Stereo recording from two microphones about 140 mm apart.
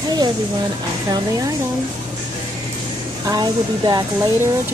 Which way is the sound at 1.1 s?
25° right (ahead or behind).